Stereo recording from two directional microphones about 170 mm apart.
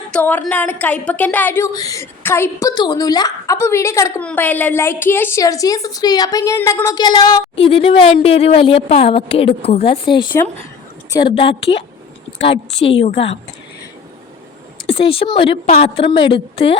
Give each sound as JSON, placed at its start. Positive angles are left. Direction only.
{"t": 0.1, "sound": "a woman's voice", "side_deg": 10}
{"t": 7.5, "sound": "a woman's voice", "side_deg": 35}
{"t": 12.8, "sound": "a woman's voice", "side_deg": 35}
{"t": 14.8, "sound": "a woman's voice", "side_deg": 35}